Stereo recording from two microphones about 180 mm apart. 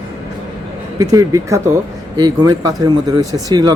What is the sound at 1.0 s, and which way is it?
Speech, 20° right (ahead or behind).